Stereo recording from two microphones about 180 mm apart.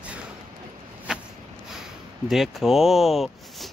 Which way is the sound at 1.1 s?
5° right (ahead or behind).